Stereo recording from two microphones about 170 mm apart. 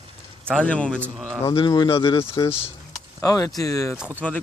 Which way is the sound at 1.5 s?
30° left (ahead or behind).